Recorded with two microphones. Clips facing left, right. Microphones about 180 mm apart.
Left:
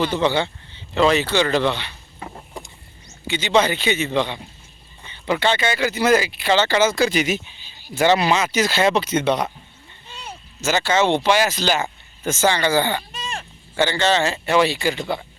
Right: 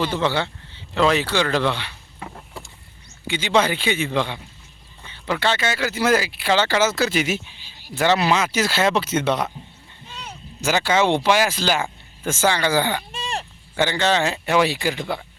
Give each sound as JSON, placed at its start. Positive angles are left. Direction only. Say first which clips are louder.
{"t": 0.0, "sound": "speech", "louder": "left 2 dB", "side_deg": -5}
{"t": 2.1, "sound": "vehicle", "louder": "left 1 dB", "side_deg": 5}
{"t": 3.3, "sound": "speech", "louder": "left 1 dB", "side_deg": -10}
{"t": 10.6, "sound": "speech", "louder": "even", "side_deg": -10}
{"t": 13.1, "sound": "a sound", "louder": "right 3 dB", "side_deg": -30}
{"t": 13.7, "sound": "speech", "louder": "left 1 dB", "side_deg": -10}